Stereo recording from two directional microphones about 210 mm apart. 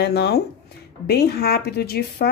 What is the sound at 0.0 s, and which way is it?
A woman's voice, 50° left (ahead or behind).